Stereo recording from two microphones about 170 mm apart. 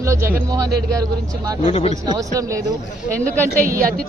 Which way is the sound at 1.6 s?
40° left (ahead or behind).